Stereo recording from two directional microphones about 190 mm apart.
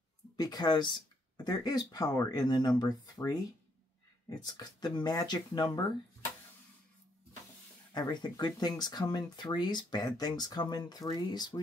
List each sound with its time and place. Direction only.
0.4 s speech: 20° left (ahead or behind)
4.5 s speech: 20° left (ahead or behind)
7.9 s speech: 20° left (ahead or behind)